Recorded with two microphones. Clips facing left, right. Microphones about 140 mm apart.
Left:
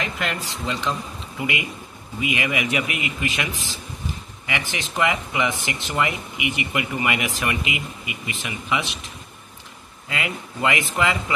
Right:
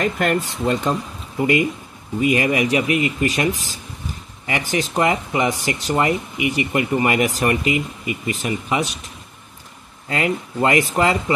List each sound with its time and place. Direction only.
0.0 s speech: 50° right (ahead or behind)
10.0 s speech: 40° right (ahead or behind)